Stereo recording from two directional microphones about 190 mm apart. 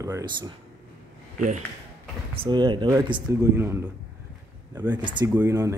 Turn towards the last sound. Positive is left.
turn(degrees=-15)  # may be behind; listen again after turning